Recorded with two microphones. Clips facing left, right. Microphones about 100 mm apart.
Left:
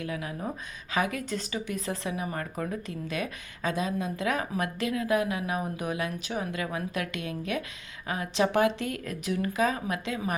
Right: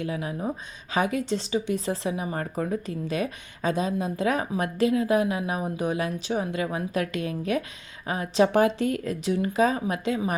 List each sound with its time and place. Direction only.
0.0 s speech: 25° right (ahead or behind)